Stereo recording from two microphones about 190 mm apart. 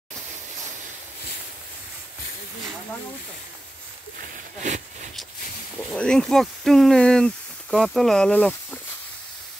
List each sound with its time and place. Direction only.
4.2 s speech: 40° right (ahead or behind)
5.9 s speech: 5° left (ahead or behind)